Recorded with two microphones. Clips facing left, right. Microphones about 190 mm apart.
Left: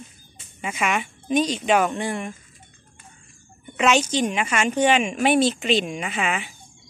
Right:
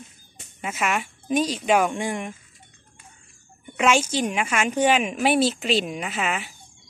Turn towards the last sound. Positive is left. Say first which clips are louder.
# left 1 dB
turn(degrees=0)  # may be behind; listen again after turning